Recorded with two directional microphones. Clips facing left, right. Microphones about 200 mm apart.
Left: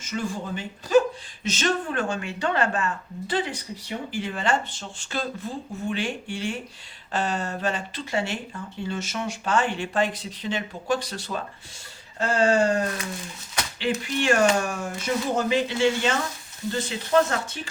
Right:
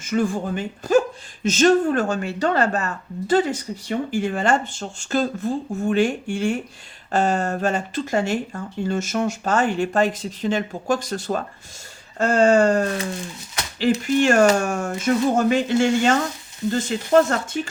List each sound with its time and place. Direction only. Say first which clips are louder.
0.0 s speech: right 8 dB; 50° right (ahead or behind)